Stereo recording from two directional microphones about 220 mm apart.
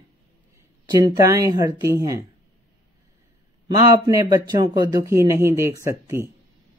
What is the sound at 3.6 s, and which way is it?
Speech, 15° right (ahead or behind).